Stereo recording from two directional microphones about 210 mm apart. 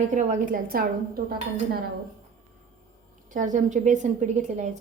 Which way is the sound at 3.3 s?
35° right (ahead or behind).